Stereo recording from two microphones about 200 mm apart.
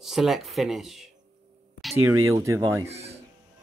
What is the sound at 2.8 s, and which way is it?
Speech, 30° right (ahead or behind).